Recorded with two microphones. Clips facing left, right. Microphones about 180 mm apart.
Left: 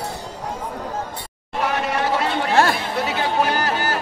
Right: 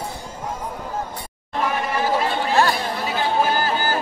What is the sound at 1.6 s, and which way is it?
Chatter, 75° left (ahead or behind).